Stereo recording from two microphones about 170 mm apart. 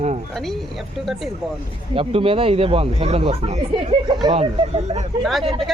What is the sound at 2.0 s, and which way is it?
Speech, 30° right (ahead or behind).